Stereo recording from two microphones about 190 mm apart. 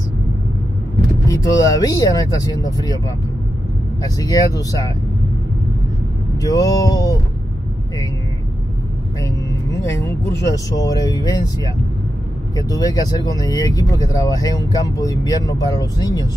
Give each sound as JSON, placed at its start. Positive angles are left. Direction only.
{"t": 1.2, "sound": "speech", "side_deg": 15}
{"t": 4.0, "sound": "speech", "side_deg": 20}
{"t": 6.3, "sound": "a sound", "side_deg": 20}
{"t": 9.2, "sound": "speech", "side_deg": 15}